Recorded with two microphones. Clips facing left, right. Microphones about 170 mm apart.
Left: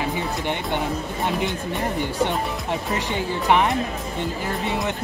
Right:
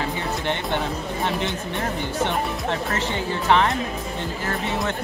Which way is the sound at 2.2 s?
15° left (ahead or behind).